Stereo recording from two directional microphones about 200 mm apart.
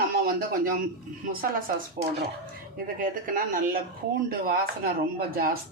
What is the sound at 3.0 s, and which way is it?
A man's voice, 45° right (ahead or behind).